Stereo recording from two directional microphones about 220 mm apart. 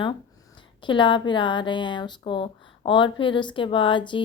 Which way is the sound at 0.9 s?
20° left (ahead or behind).